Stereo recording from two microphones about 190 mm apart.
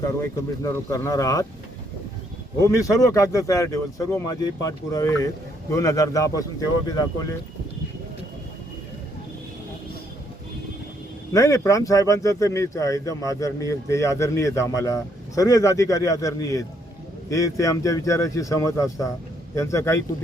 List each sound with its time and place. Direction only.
0.0 s speech: 15° left (ahead or behind)
2.6 s speech: 15° left (ahead or behind)
11.3 s speech: 15° left (ahead or behind)